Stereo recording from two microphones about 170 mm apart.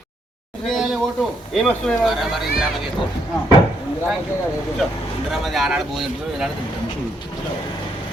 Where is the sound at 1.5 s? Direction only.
Centre (ahead or behind).